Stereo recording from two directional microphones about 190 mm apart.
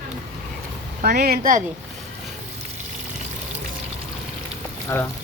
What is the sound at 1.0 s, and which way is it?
Speech, 55° right (ahead or behind).